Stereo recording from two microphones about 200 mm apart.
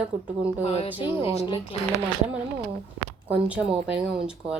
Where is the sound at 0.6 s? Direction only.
30° left (ahead or behind).